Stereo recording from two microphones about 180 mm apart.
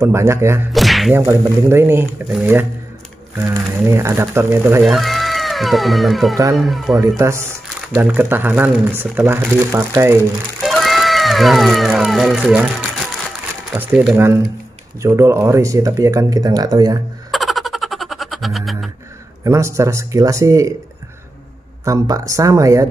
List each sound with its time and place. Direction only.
0.0 s speech: 15° right (ahead or behind)
0.7 s whip: centre (ahead or behind)
1.1 s speech: 15° right (ahead or behind)
3.3 s speech: 15° right (ahead or behind)
4.9 s speech: centre (ahead or behind)
7.2 s speech: 15° right (ahead or behind)
10.6 s speech: centre (ahead or behind)
13.7 s speech: 10° right (ahead or behind)
17.3 s a sound: centre (ahead or behind)
19.4 s speech: 15° right (ahead or behind)
21.8 s speech: 20° right (ahead or behind)